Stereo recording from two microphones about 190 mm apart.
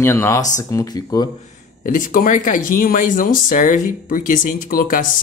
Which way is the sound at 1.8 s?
45° left (ahead or behind).